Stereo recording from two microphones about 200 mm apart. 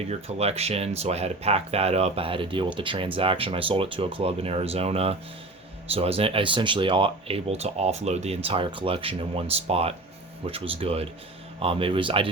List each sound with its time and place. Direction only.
0.1 s speech: 30° right (ahead or behind)